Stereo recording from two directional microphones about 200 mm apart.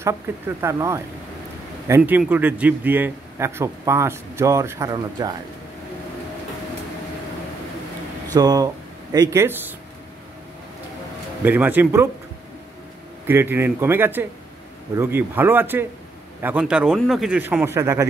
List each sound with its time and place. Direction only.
0.0 s a man's voice: 15° right (ahead or behind)
8.4 s a man's voice: 20° right (ahead or behind)
11.4 s a man's voice: 10° right (ahead or behind)
13.3 s a man's voice: 10° right (ahead or behind)